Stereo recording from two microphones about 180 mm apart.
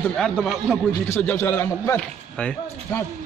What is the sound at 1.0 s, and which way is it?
A man's voice, 10° left (ahead or behind).